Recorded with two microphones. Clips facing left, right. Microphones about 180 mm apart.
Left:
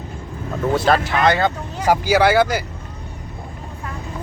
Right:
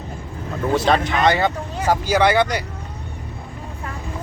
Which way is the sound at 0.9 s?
5° left (ahead or behind).